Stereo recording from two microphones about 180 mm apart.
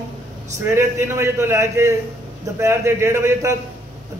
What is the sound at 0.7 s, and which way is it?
A man's voice, 15° right (ahead or behind).